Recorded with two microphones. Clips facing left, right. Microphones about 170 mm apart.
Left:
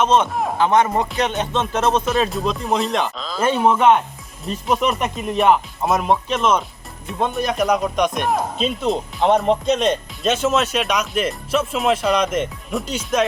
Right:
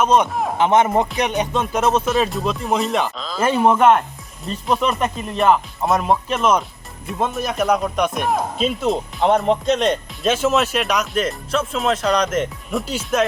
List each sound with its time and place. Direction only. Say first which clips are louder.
0.0 s speech: right 1 dB; 10° right (ahead or behind)
0.3 s speech: even; centre (ahead or behind)
0.5 s speech: right 1 dB; 20° right (ahead or behind); by 13.2 s 5° right (ahead or behind)